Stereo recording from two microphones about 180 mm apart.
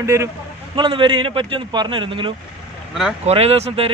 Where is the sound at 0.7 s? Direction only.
25° right (ahead or behind).